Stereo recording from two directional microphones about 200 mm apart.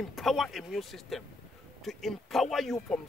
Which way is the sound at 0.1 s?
Centre (ahead or behind).